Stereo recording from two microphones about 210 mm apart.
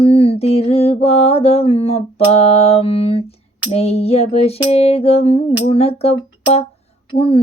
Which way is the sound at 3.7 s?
30° left (ahead or behind).